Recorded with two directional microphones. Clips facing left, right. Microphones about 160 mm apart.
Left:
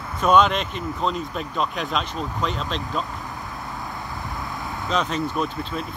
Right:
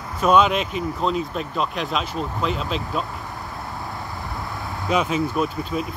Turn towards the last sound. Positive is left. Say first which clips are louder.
# right 3 dB
turn(degrees=-5)  # may be behind; listen again after turning